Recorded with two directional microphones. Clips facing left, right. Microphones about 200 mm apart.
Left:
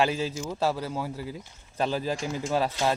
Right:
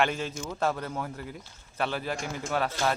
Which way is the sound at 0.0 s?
5° left (ahead or behind).